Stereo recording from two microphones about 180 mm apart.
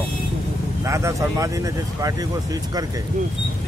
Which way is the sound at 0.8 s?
15° right (ahead or behind).